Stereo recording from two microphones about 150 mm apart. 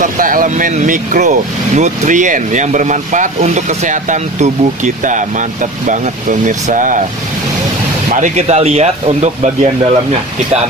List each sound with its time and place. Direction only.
0.0 s speech: 65° right (ahead or behind)
8.1 s speech: 50° right (ahead or behind)